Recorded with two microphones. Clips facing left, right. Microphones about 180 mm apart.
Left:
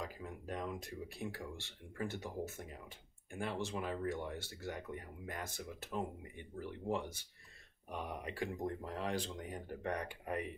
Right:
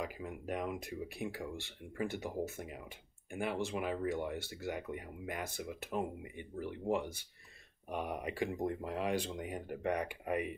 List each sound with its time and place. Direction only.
0.0 s speech: 10° right (ahead or behind)